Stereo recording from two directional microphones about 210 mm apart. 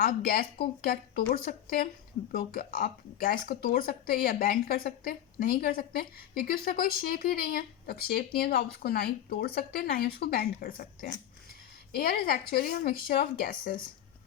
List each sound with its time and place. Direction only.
0.0 s speech: 45° left (ahead or behind)